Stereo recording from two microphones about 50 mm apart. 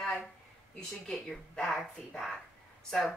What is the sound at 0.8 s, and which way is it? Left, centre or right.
Speech, centre.